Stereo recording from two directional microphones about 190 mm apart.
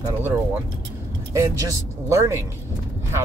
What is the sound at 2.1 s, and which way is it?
Speech, 15° right (ahead or behind).